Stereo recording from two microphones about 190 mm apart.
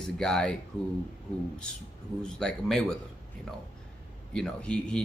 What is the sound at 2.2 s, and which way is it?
Speech, centre (ahead or behind).